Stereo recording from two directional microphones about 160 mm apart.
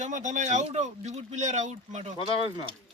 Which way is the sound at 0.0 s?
50° right (ahead or behind).